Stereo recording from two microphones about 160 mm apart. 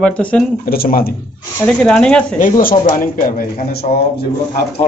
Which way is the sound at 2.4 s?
60° left (ahead or behind).